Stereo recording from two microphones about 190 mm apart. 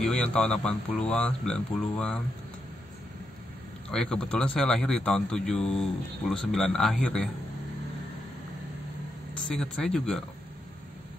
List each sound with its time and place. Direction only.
0.0 s a man's voice: 5° left (ahead or behind)
3.9 s a man's voice: 5° left (ahead or behind)
9.3 s speech: 5° left (ahead or behind)